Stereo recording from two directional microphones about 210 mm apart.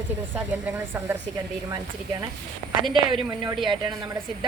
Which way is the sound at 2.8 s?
20° right (ahead or behind).